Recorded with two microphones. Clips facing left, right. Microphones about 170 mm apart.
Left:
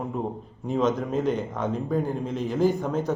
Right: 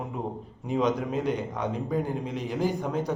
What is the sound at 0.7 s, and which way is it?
A man's voice, 15° right (ahead or behind).